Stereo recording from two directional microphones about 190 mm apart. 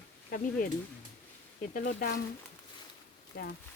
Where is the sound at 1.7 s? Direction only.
45° left (ahead or behind).